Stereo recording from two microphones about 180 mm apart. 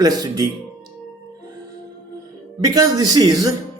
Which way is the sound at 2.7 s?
20° right (ahead or behind).